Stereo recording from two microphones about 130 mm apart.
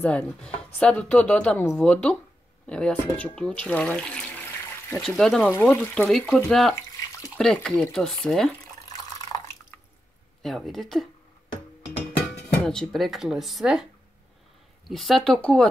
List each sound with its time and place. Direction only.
0.0 s speech: 10° left (ahead or behind)
5.5 s speech: 15° left (ahead or behind); by 6.7 s centre (ahead or behind)
6.7 s bathtub: 25° left (ahead or behind)
7.3 s speech: 5° left (ahead or behind)
10.4 s speech: centre (ahead or behind)
12.6 s speech: 5° left (ahead or behind)
14.9 s speech: centre (ahead or behind)